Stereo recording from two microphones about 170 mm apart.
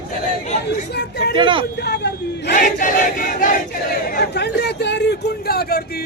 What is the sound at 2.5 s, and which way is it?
Battle cry, 50° left (ahead or behind).